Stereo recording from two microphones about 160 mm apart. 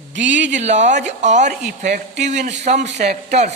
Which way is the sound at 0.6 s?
45° right (ahead or behind).